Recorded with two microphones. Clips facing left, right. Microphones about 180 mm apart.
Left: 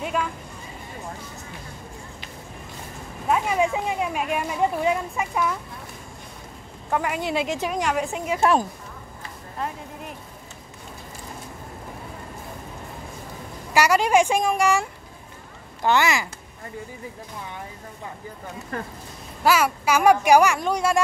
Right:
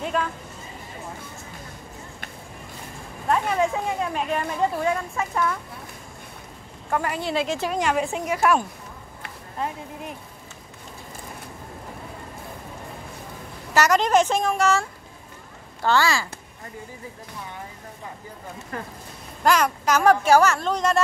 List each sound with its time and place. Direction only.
3.3 s speech: 10° left (ahead or behind)
6.9 s speech: 10° left (ahead or behind)
7.8 s a woman's voice: centre (ahead or behind)
8.3 s a child's voice: 25° left (ahead or behind)
13.7 s a child's voice: 10° left (ahead or behind)
19.4 s speech: 5° left (ahead or behind)